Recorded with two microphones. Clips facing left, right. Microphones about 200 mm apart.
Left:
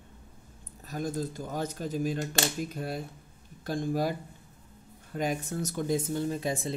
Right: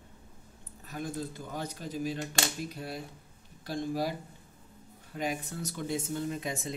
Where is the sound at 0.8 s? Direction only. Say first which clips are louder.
Left 4 dB; 40° left (ahead or behind).